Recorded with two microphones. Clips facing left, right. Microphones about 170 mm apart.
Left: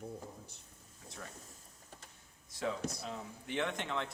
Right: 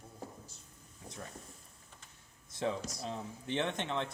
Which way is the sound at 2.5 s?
20° right (ahead or behind).